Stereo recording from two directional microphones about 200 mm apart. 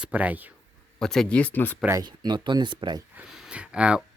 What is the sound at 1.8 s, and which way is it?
Speech, 15° right (ahead or behind).